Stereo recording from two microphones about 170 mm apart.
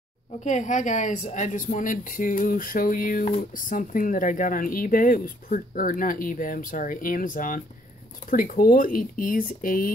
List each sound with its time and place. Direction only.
0.4 s a woman's voice: 45° left (ahead or behind)